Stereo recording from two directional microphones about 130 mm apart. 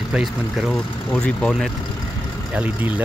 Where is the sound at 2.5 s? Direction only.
15° right (ahead or behind).